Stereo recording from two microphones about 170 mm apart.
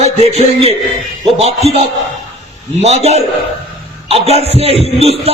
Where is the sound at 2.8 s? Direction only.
40° right (ahead or behind).